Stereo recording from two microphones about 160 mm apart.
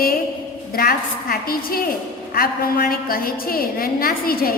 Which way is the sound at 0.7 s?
65° left (ahead or behind).